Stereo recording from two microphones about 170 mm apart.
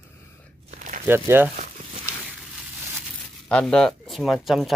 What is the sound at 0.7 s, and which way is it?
Crumpling, 50° right (ahead or behind).